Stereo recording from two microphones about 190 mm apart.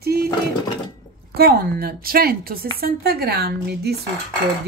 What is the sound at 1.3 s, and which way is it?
Speech, 55° right (ahead or behind).